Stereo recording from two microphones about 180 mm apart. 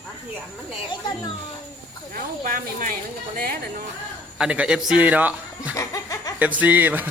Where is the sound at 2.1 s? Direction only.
50° right (ahead or behind).